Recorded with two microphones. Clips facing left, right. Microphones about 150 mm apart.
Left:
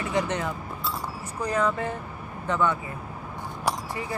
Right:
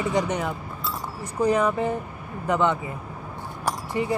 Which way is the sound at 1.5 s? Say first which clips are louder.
Right 2 dB; 15° right (ahead or behind).